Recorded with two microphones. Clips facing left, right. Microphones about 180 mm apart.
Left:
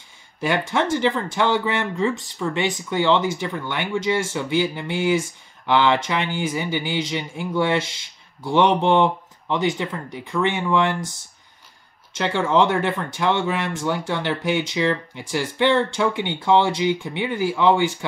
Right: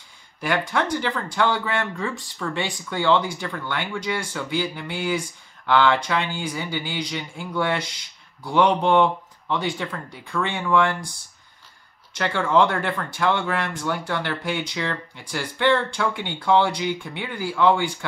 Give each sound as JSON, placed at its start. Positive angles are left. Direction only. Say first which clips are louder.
{"t": 0.4, "sound": "speech", "louder": "left 2 dB", "side_deg": 20}